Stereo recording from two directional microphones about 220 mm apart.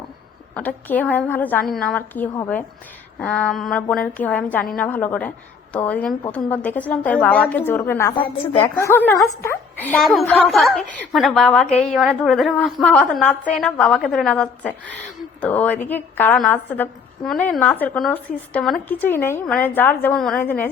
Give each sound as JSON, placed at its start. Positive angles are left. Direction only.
{"t": 0.5, "sound": "a woman's voice", "side_deg": 5}
{"t": 8.2, "sound": "a woman's voice", "side_deg": 25}
{"t": 8.9, "sound": "a woman's voice", "side_deg": 10}